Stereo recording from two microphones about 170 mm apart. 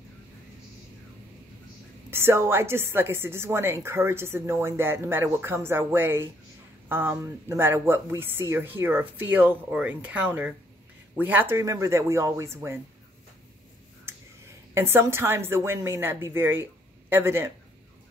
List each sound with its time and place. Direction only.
2.0 s a woman's voice: 15° right (ahead or behind)
14.1 s a sound: 15° right (ahead or behind)
14.7 s a woman's voice: 15° right (ahead or behind)